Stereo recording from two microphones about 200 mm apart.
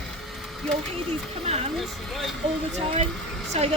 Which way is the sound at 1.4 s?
30° right (ahead or behind).